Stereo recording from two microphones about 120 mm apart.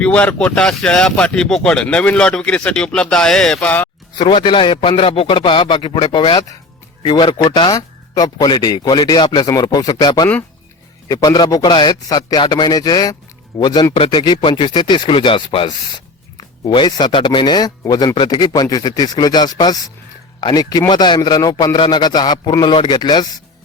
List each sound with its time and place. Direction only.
0.0 s speech: 10° left (ahead or behind)
4.1 s a man's voice: 40° left (ahead or behind)
13.9 s a man's voice: 50° left (ahead or behind)